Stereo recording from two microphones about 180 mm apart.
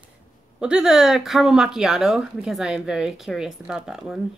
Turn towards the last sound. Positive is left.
turn(degrees=-5)  # may be behind; listen again after turning